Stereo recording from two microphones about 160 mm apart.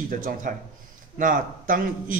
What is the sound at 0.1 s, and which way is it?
A man's voice, 55° right (ahead or behind).